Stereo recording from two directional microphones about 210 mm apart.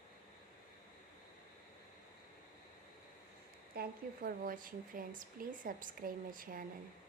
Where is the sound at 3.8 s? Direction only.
45° right (ahead or behind).